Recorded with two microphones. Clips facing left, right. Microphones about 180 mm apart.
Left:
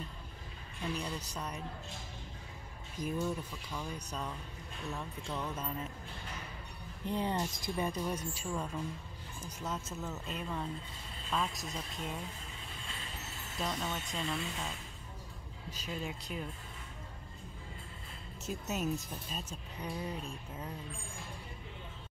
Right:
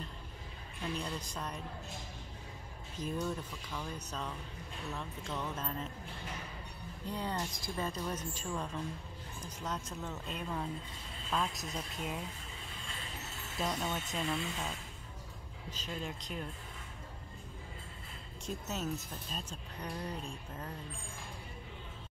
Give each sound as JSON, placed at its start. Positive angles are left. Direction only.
{"t": 0.9, "sound": "speech", "side_deg": 10}
{"t": 3.0, "sound": "speech", "side_deg": 10}
{"t": 7.1, "sound": "speech", "side_deg": 20}
{"t": 13.6, "sound": "speech", "side_deg": -5}
{"t": 15.7, "sound": "speech", "side_deg": 5}
{"t": 18.4, "sound": "speech", "side_deg": 10}